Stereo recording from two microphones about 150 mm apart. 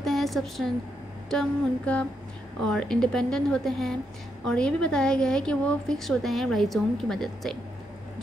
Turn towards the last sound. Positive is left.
turn(degrees=0)  # may be behind; listen again after turning